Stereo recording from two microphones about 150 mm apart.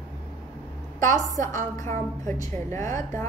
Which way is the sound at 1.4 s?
55° right (ahead or behind).